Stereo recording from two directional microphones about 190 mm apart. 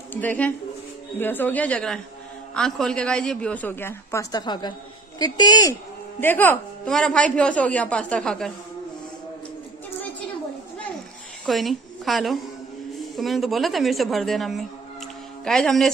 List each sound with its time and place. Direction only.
0.1 s a woman's voice: 10° left (ahead or behind)
6.2 s a woman's voice: 10° left (ahead or behind)
11.4 s a woman's voice: centre (ahead or behind)